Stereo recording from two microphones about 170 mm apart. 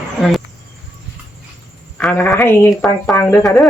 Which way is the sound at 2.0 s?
10° left (ahead or behind).